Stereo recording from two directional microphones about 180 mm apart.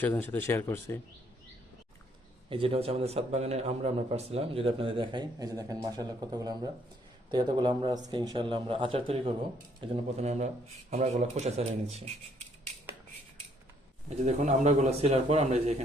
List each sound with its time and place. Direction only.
0.0 s speech: 10° left (ahead or behind)
2.5 s a man's voice: 30° right (ahead or behind)
14.3 s a man's voice: 40° right (ahead or behind)